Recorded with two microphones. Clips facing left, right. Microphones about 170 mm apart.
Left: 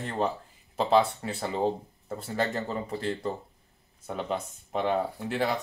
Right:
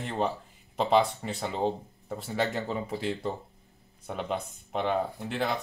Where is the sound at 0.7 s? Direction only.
5° left (ahead or behind).